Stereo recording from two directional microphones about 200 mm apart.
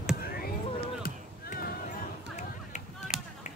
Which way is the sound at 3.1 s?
40° left (ahead or behind).